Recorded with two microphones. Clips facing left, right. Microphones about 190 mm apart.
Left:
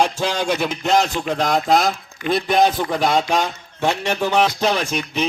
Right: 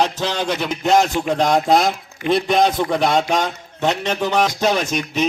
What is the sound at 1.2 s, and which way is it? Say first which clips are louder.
A man's voice: right 3 dB; 15° right (ahead or behind).